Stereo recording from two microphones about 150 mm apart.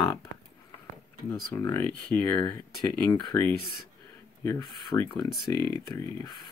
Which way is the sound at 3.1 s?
30° left (ahead or behind).